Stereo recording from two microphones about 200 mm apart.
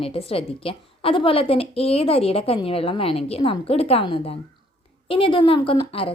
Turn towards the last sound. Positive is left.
turn(degrees=30)  # may be behind; listen again after turning